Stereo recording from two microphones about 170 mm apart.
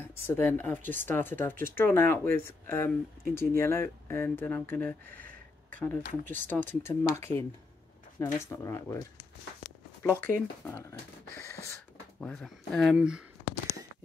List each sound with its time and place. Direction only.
0.0 s speech: 15° left (ahead or behind)
10.0 s speech: 10° left (ahead or behind)
12.2 s speech: 5° left (ahead or behind)